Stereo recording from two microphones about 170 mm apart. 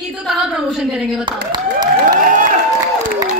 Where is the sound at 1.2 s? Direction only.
25° right (ahead or behind).